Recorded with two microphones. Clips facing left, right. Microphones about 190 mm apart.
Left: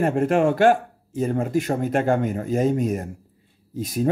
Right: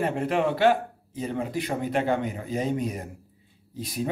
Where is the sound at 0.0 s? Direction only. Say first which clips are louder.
Left 6 dB; 45° left (ahead or behind).